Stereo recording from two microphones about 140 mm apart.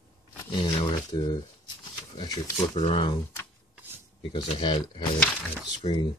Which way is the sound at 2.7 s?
50° left (ahead or behind).